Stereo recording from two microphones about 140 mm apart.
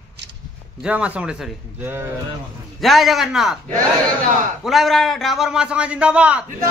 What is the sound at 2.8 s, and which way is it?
Speech, centre (ahead or behind).